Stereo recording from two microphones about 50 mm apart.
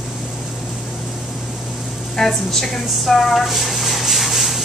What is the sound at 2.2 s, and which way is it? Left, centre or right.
Speech, centre.